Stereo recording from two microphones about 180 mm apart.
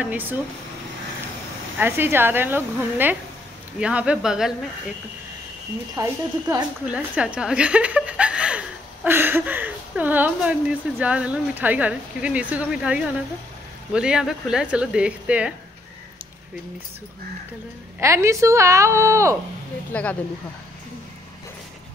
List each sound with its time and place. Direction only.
0.0 s a woman's voice: 10° right (ahead or behind)
1.8 s a woman's voice: 10° right (ahead or behind)
5.9 s a woman's voice: 20° right (ahead or behind)
6.9 s speech: 5° right (ahead or behind)
18.0 s a woman's voice: 15° right (ahead or behind)
19.9 s speech: 10° left (ahead or behind)